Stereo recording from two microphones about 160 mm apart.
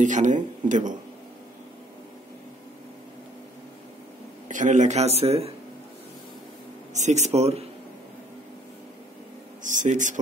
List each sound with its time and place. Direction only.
0.0 s speech: 50° right (ahead or behind)
4.5 s speech: 50° right (ahead or behind)
6.9 s speech: 45° right (ahead or behind)
9.6 s speech: 50° right (ahead or behind)